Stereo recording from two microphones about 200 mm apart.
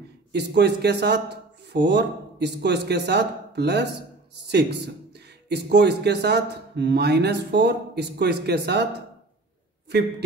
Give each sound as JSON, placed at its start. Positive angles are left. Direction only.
{"t": 0.3, "sound": "a man's voice", "side_deg": -55}